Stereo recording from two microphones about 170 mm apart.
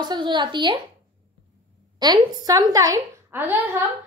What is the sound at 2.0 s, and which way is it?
A woman's voice, 20° right (ahead or behind).